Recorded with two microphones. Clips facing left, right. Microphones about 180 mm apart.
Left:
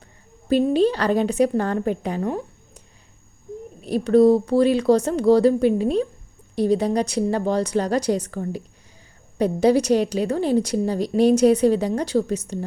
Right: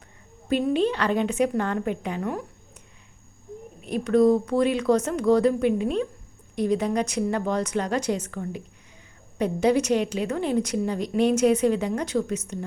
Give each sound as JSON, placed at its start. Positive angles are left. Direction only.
{"t": 0.4, "sound": "a woman's voice", "side_deg": 35}
{"t": 3.8, "sound": "a woman's voice", "side_deg": 35}